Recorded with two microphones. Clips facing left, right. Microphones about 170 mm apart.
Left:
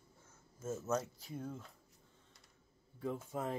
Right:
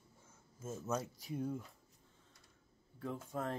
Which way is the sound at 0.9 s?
15° right (ahead or behind).